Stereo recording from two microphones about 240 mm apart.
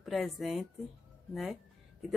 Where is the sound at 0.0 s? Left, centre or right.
Centre.